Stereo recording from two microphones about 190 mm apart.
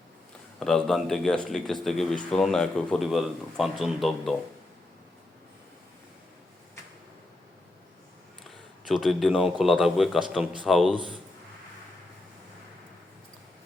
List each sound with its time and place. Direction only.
0.6 s speech: 5° left (ahead or behind)
8.4 s speech: centre (ahead or behind)
10.9 s a man's voice: 25° right (ahead or behind)